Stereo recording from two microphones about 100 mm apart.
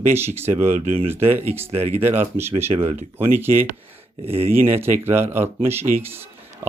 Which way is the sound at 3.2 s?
20° right (ahead or behind).